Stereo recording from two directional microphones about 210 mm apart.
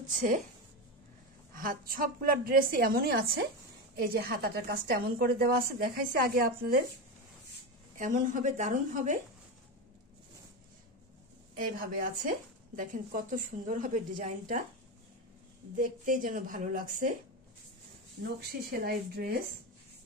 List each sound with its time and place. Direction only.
0.1 s speech: 40° right (ahead or behind)
1.5 s a woman's voice: 40° right (ahead or behind)
7.9 s speech: 35° right (ahead or behind)
11.5 s speech: 40° right (ahead or behind)
15.7 s speech: 40° right (ahead or behind)
18.2 s a woman's voice: 45° right (ahead or behind)